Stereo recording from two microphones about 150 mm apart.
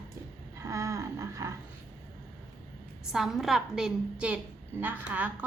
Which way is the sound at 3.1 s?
5° right (ahead or behind).